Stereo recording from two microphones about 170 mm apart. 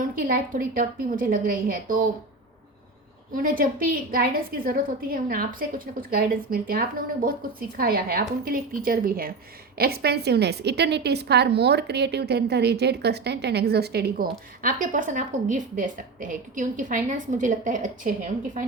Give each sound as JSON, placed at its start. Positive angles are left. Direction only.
{"t": 0.0, "sound": "a woman's voice", "side_deg": -60}
{"t": 3.3, "sound": "a woman's voice", "side_deg": -55}